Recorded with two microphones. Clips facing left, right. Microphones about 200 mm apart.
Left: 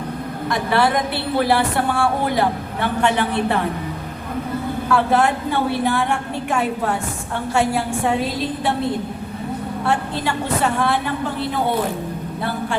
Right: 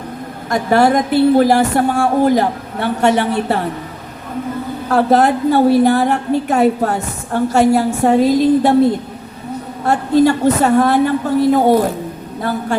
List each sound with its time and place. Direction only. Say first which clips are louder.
0.5 s a woman's voice: right 6 dB; 45° right (ahead or behind)
4.9 s a woman's voice: right 5 dB; 40° right (ahead or behind)
9.8 s a woman's voice: right 11 dB; 40° right (ahead or behind)